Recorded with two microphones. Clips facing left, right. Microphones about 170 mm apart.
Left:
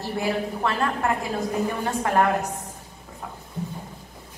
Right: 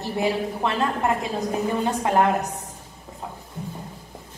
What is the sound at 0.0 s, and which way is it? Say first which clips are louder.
A woman's voice: right 2 dB; 20° right (ahead or behind).